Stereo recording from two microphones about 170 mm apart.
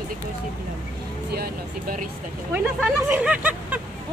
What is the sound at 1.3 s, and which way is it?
Speech, 60° right (ahead or behind).